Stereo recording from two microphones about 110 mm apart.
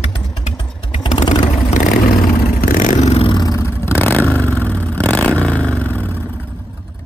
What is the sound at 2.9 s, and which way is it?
Vehicle, 80° left.